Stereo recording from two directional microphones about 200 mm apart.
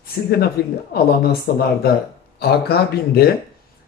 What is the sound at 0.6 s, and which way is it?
Speech, 55° left (ahead or behind).